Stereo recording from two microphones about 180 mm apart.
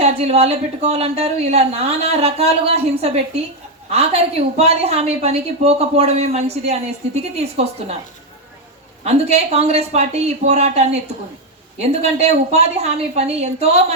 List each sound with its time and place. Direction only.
0.0 s a woman's voice: 35° right (ahead or behind)
9.0 s a woman's voice: 35° right (ahead or behind)